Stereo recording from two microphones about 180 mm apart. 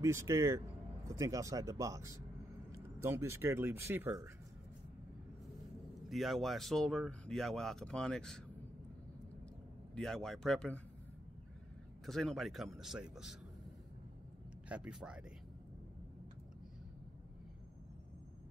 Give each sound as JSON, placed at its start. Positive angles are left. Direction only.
{"t": 0.0, "sound": "speech", "side_deg": -15}
{"t": 6.0, "sound": "speech", "side_deg": 0}
{"t": 9.9, "sound": "speech", "side_deg": 0}
{"t": 12.1, "sound": "speech", "side_deg": 0}
{"t": 14.7, "sound": "speech", "side_deg": -5}